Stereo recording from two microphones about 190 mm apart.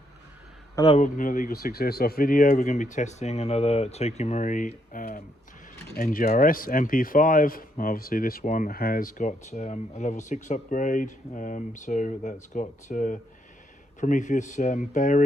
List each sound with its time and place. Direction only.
0.9 s speech: 40° left (ahead or behind)